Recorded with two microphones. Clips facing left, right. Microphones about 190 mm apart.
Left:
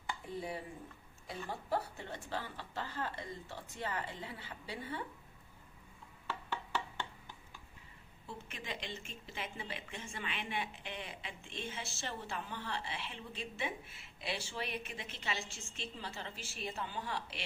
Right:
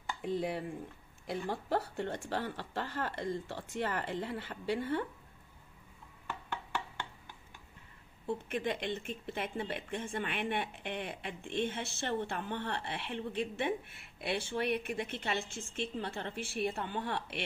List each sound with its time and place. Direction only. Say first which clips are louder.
0.2 s speech: right 11 dB; 75° right (ahead or behind)
8.5 s speech: right 9 dB; 55° right (ahead or behind)